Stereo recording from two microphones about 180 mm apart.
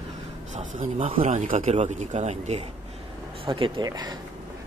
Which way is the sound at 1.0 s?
30° right (ahead or behind).